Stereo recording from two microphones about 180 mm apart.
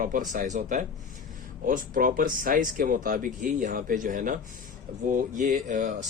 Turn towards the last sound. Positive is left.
turn(degrees=-45)  # may be behind; listen again after turning